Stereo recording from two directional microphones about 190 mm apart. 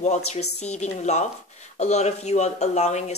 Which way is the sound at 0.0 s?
35° left (ahead or behind).